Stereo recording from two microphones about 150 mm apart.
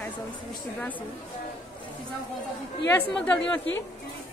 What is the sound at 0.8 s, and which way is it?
Speech, 10° left (ahead or behind).